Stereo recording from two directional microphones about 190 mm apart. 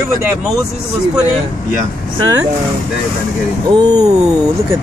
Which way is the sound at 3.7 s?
20° right (ahead or behind).